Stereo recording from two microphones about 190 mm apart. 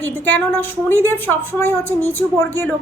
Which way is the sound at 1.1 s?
10° left (ahead or behind).